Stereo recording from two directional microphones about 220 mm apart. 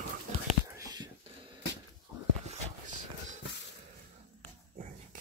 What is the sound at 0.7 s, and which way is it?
Whispering, 15° right (ahead or behind).